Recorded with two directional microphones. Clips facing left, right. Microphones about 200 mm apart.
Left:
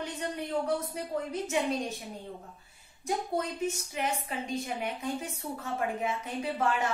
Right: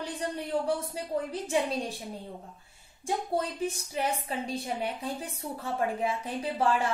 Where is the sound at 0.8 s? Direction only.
30° right (ahead or behind).